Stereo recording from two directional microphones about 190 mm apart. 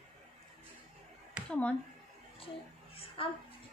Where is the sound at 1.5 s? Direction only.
5° left (ahead or behind).